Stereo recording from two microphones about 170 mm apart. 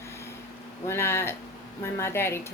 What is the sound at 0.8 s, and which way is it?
Speech, 15° left (ahead or behind).